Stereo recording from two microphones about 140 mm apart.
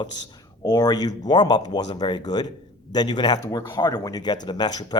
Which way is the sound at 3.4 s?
20° left (ahead or behind).